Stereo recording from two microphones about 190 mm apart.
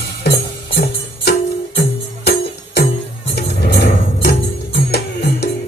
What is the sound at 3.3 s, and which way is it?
Music, 60° left (ahead or behind).